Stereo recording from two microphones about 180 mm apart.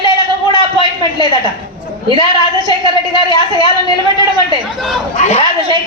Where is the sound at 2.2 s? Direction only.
25° left (ahead or behind).